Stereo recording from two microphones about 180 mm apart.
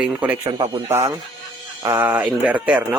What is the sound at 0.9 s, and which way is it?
Speech, 20° right (ahead or behind).